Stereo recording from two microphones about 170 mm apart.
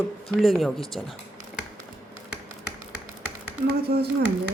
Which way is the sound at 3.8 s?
65° right (ahead or behind).